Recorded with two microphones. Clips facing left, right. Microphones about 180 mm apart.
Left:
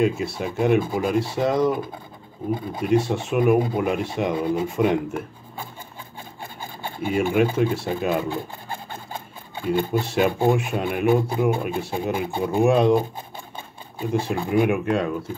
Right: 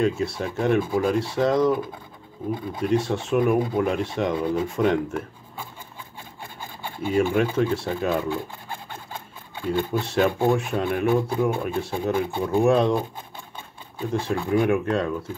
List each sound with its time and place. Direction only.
0.0 s speech: 10° left (ahead or behind)
2.8 s speech: 10° left (ahead or behind)
7.0 s a sound: 10° left (ahead or behind)
9.7 s speech: 10° left (ahead or behind)